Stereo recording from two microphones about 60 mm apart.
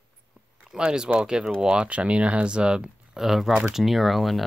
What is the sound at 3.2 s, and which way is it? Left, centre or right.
Speech, centre.